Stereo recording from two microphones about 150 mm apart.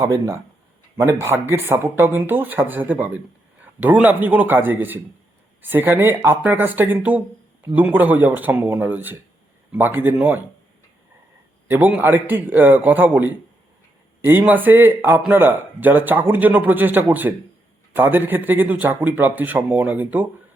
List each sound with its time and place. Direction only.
0.0 s speech: 20° right (ahead or behind)
11.7 s speech: 10° right (ahead or behind)